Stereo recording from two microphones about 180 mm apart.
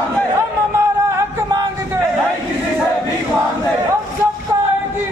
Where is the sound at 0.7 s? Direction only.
15° right (ahead or behind).